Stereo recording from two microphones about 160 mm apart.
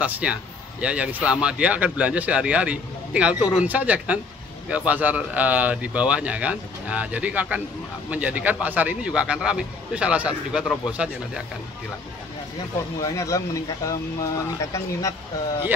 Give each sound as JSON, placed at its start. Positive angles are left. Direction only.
{"t": 0.0, "sound": "a man's voice", "side_deg": -10}
{"t": 13.0, "sound": "speech", "side_deg": 20}